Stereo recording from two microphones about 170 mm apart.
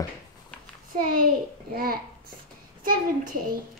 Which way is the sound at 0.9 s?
55° right (ahead or behind).